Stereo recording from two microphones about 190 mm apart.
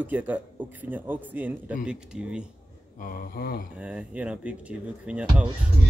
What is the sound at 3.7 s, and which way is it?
Speech, 5° right (ahead or behind).